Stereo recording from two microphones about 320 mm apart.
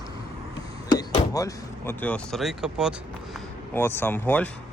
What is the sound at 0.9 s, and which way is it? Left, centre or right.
Speech, centre.